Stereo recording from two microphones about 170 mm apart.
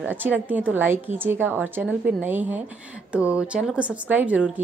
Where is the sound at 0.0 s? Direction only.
10° right (ahead or behind).